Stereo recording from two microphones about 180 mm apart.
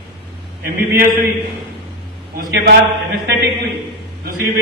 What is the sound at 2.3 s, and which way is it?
Speech, 55° right (ahead or behind).